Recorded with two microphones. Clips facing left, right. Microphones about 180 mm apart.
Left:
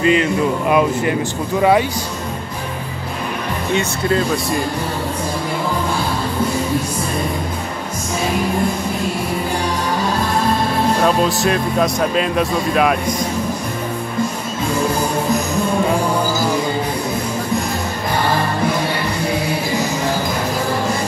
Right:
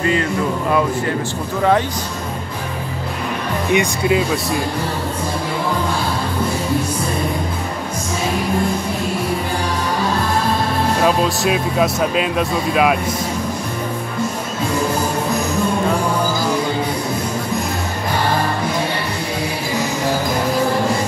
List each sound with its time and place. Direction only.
0.0 s speech: 20° left (ahead or behind)
3.7 s speech: 5° right (ahead or behind)
11.0 s speech: 5° right (ahead or behind)